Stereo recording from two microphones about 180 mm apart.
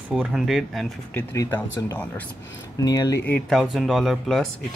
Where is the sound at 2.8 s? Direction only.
20° left (ahead or behind).